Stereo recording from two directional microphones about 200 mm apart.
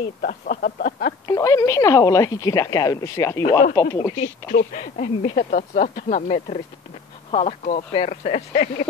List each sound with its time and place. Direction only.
0.2 s speech: 45° left (ahead or behind)
1.2 s speech: 15° left (ahead or behind)
4.2 s speech: 50° left (ahead or behind)
4.7 s speech: 35° left (ahead or behind)